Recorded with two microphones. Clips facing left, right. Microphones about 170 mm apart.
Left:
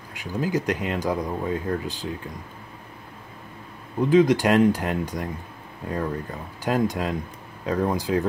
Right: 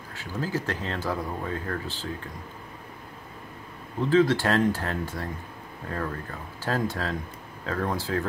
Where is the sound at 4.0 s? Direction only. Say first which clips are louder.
Left 4 dB; 15° left (ahead or behind).